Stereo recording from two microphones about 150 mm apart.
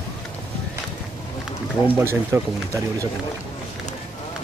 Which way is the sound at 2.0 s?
15° right (ahead or behind).